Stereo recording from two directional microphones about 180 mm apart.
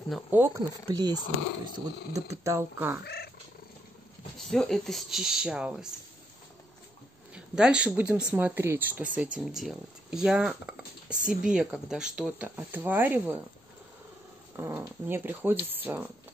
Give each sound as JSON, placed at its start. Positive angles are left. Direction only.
{"t": 0.3, "sound": "speech", "side_deg": -15}
{"t": 4.4, "sound": "speech", "side_deg": 0}
{"t": 7.3, "sound": "speech", "side_deg": -5}
{"t": 14.6, "sound": "speech", "side_deg": -10}